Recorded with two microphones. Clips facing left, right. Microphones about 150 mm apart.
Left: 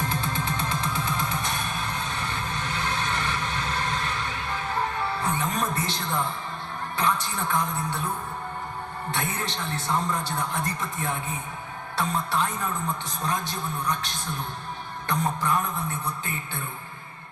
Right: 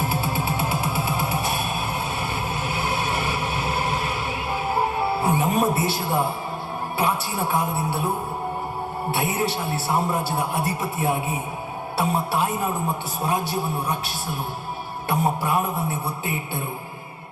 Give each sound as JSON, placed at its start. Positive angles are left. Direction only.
{"t": 0.0, "sound": "music", "side_deg": -10}
{"t": 2.8, "sound": "vehicle", "side_deg": -10}
{"t": 4.7, "sound": "music", "side_deg": -10}
{"t": 7.0, "sound": "a man's voice", "side_deg": -10}
{"t": 9.1, "sound": "a man's voice", "side_deg": -10}
{"t": 12.6, "sound": "a woman's voice", "side_deg": -25}
{"t": 13.2, "sound": "a man's voice", "side_deg": -10}
{"t": 15.4, "sound": "a man's voice", "side_deg": -10}